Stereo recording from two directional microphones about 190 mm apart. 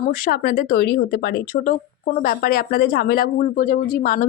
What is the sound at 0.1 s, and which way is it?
Speech, 50° left (ahead or behind).